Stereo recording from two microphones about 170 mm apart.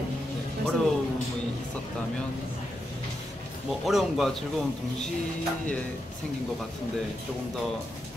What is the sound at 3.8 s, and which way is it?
Speech, centre (ahead or behind).